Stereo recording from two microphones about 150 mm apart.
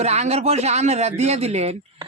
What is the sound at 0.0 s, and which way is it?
A man's voice, 45° right (ahead or behind).